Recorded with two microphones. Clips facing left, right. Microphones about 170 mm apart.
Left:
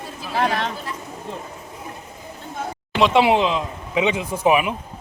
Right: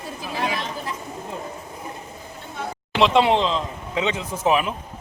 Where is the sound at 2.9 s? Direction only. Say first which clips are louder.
Left 1 dB; 5° left (ahead or behind).